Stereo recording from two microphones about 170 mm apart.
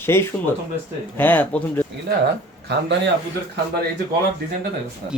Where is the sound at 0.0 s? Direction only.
15° left (ahead or behind).